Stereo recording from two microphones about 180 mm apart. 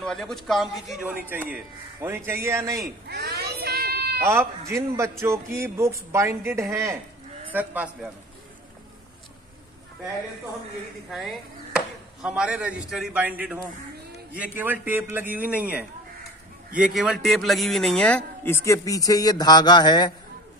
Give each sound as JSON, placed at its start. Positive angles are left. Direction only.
{"t": 0.0, "sound": "speech", "side_deg": 5}
{"t": 3.1, "sound": "sheep", "side_deg": -65}
{"t": 4.2, "sound": "speech", "side_deg": -15}
{"t": 11.1, "sound": "speech", "side_deg": 0}
{"t": 16.8, "sound": "speech", "side_deg": 0}